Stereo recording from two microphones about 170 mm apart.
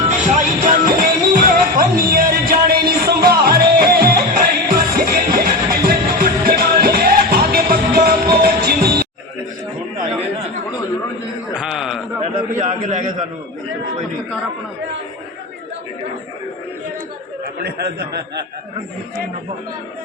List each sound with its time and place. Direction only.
0.1 s music: 45° right (ahead or behind); by 9.0 s 65° right (ahead or behind)
11.5 s a sound: 5° right (ahead or behind)
12.5 s a man's voice: 45° right (ahead or behind)
17.6 s speech: 70° right (ahead or behind)